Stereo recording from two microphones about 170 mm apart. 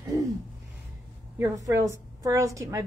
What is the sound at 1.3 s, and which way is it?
A woman's voice, 15° right (ahead or behind).